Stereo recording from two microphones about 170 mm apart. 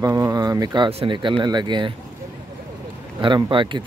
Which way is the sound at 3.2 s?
25° right (ahead or behind).